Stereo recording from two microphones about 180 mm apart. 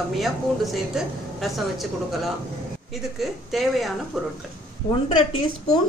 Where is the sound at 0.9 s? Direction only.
Centre (ahead or behind).